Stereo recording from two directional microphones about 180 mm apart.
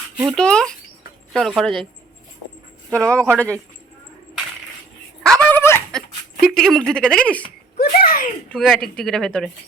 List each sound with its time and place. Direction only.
0.3 s speech: 5° left (ahead or behind)
2.9 s speech: 5° left (ahead or behind)
5.2 s a sound: 5° left (ahead or behind)
6.4 s speech: centre (ahead or behind)
7.8 s speech: 55° left (ahead or behind)
8.5 s speech: centre (ahead or behind)